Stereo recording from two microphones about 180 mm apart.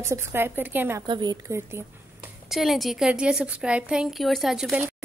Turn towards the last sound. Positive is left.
turn(degrees=-5)  # may be behind; listen again after turning